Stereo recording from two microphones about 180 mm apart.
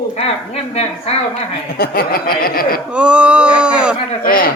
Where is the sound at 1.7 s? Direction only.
55° left (ahead or behind).